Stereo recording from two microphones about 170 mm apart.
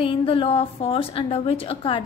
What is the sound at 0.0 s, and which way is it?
A woman's voice, 30° left (ahead or behind).